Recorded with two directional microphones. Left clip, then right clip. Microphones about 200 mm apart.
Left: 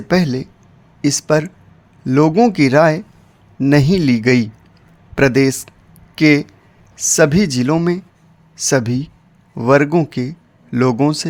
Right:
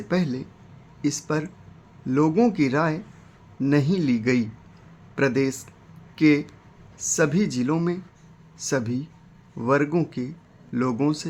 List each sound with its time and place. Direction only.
0.1 s speech: 50° left (ahead or behind)